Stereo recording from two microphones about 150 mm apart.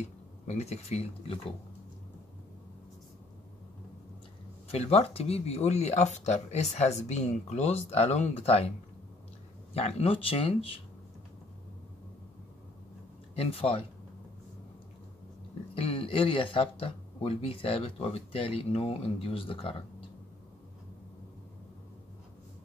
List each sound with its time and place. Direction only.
0.0 s speech: 45° left (ahead or behind)
4.6 s speech: 40° left (ahead or behind)
9.8 s speech: 40° left (ahead or behind)
13.3 s speech: 40° left (ahead or behind)
15.7 s speech: 40° left (ahead or behind)